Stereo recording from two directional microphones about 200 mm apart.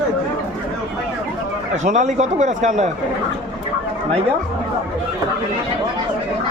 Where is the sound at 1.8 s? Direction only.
35° right (ahead or behind).